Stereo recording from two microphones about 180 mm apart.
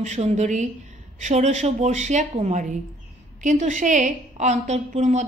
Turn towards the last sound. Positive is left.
turn(degrees=-40)  # may be behind; listen again after turning